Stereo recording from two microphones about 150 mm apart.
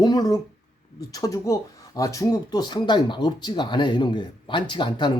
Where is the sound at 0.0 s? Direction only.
25° left (ahead or behind).